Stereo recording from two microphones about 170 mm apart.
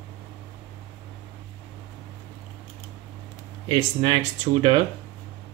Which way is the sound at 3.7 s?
40° right (ahead or behind).